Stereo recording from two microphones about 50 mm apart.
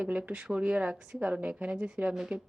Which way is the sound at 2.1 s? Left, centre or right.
Centre.